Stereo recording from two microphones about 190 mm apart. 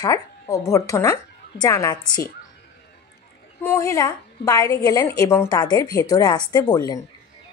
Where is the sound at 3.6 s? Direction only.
15° left (ahead or behind).